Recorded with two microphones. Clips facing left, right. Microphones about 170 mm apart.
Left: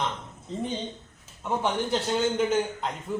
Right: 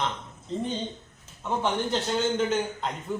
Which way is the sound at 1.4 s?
10° left (ahead or behind).